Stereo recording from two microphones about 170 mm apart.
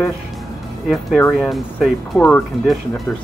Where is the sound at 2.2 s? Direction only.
10° left (ahead or behind).